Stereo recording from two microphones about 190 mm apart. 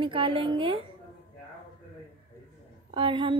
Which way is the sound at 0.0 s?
25° right (ahead or behind).